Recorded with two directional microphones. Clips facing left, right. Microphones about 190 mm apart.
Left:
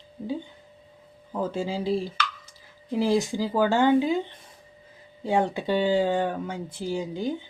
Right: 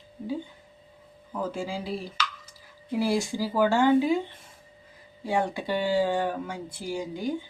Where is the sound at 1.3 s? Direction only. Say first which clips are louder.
Left 3 dB; 25° left (ahead or behind).